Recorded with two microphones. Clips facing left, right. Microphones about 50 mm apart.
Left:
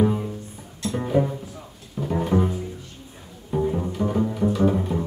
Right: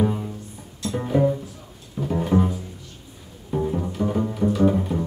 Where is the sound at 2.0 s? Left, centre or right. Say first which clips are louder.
Right 1 dB; centre.